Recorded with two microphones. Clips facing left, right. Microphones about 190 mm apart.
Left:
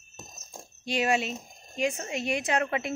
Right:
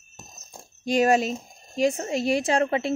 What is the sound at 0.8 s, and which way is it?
Speech, 45° right (ahead or behind).